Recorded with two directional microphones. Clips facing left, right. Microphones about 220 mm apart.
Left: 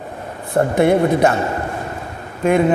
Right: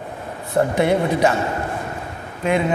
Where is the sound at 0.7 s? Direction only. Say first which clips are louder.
Left 7 dB; 50° left (ahead or behind).